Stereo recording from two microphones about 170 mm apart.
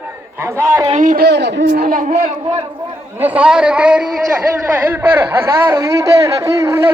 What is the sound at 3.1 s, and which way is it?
Speech, 10° right (ahead or behind).